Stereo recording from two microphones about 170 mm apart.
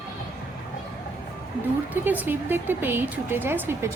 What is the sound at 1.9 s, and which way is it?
A woman's voice, 10° right (ahead or behind).